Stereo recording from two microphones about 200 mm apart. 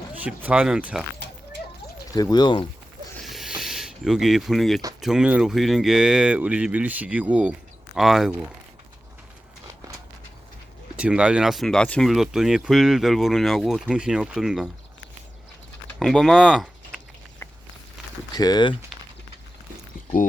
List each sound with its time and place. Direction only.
0.3 s speech: 5° right (ahead or behind)
2.1 s speech: 20° left (ahead or behind)
3.2 s a sound: centre (ahead or behind)
4.9 s speech: centre (ahead or behind)
10.9 s speech: 5° right (ahead or behind)
16.0 s speech: centre (ahead or behind)
18.3 s speech: 20° left (ahead or behind)
18.9 s a sound: centre (ahead or behind)